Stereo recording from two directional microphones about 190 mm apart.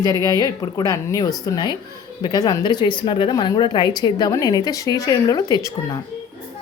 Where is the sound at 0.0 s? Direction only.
20° left (ahead or behind).